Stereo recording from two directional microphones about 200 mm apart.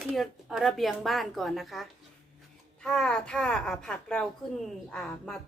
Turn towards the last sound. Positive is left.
turn(degrees=5)  # may be behind; listen again after turning